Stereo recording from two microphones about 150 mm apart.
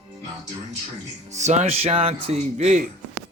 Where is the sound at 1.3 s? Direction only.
50° right (ahead or behind).